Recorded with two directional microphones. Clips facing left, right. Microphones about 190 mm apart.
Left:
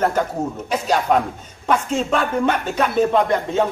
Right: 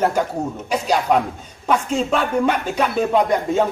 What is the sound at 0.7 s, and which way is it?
A man's voice, centre (ahead or behind).